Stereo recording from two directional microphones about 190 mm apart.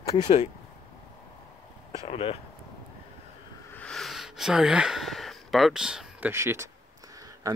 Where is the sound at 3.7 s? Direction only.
5° left (ahead or behind).